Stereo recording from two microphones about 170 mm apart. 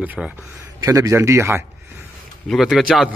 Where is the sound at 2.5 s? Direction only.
Centre (ahead or behind).